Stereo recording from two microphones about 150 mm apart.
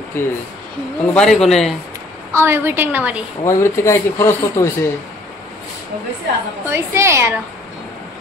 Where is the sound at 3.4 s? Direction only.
20° left (ahead or behind).